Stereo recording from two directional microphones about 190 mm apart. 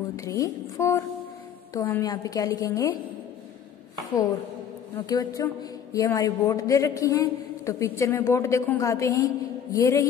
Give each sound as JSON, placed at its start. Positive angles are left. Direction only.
{"t": 0.1, "sound": "a man's voice", "side_deg": 20}
{"t": 4.9, "sound": "a man's voice", "side_deg": 20}